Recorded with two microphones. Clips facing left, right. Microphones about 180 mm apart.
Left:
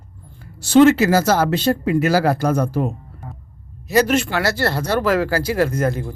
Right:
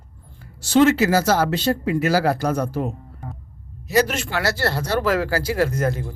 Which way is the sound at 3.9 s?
55° left (ahead or behind).